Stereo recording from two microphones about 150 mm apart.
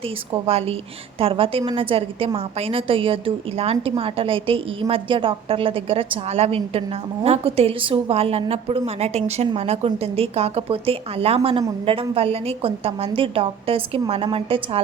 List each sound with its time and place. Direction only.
0.4 s a woman's voice: 40° right (ahead or behind)